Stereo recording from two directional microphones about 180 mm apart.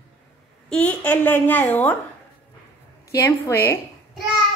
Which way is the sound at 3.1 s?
15° left (ahead or behind).